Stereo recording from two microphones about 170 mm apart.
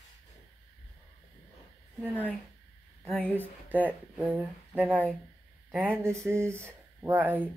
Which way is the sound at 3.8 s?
10° right (ahead or behind).